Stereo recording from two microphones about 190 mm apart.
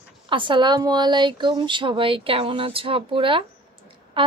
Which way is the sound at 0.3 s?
25° right (ahead or behind).